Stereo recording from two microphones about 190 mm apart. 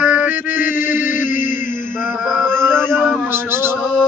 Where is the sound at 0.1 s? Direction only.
10° right (ahead or behind).